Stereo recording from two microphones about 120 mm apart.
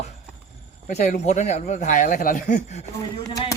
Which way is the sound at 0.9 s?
75° left (ahead or behind).